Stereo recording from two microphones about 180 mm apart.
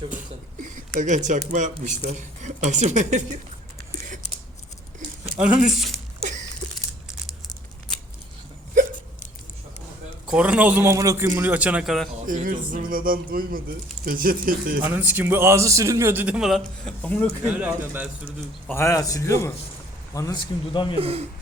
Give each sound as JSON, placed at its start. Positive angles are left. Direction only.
{"t": 0.6, "sound": "a sound", "side_deg": -45}
{"t": 1.5, "sound": "speech", "side_deg": -40}
{"t": 5.4, "sound": "a man's voice", "side_deg": -5}
{"t": 6.2, "sound": "a sound", "side_deg": -40}
{"t": 10.3, "sound": "a man's voice", "side_deg": -5}
{"t": 12.1, "sound": "speech", "side_deg": -45}
{"t": 14.8, "sound": "a man's voice", "side_deg": -10}
{"t": 17.4, "sound": "a man's voice", "side_deg": -10}
{"t": 18.3, "sound": "a man's voice", "side_deg": 15}
{"t": 21.0, "sound": "speech", "side_deg": -35}